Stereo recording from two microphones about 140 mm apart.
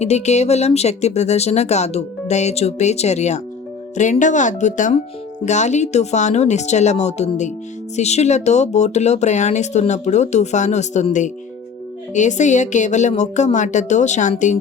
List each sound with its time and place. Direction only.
0.0 s speech: 55° left (ahead or behind)